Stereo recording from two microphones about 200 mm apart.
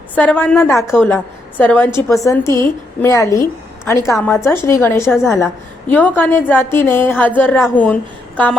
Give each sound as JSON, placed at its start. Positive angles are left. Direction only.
{"t": 0.2, "sound": "a woman's voice", "side_deg": 5}
{"t": 5.0, "sound": "a woman's voice", "side_deg": 0}
{"t": 5.9, "sound": "a woman's voice", "side_deg": 10}